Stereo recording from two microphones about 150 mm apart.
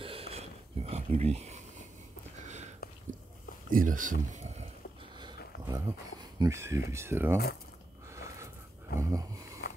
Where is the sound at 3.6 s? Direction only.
65° right (ahead or behind).